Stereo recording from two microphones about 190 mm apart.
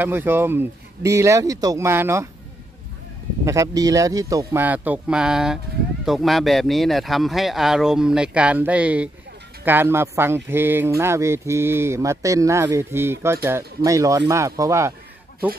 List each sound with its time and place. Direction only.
0.0 s speech: 10° right (ahead or behind)
3.4 s speech: 15° right (ahead or behind)